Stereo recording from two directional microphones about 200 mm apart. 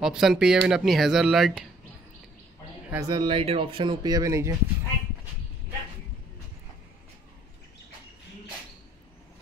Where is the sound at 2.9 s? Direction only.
20° right (ahead or behind).